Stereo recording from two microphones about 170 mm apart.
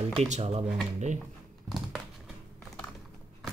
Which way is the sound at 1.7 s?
Centre (ahead or behind).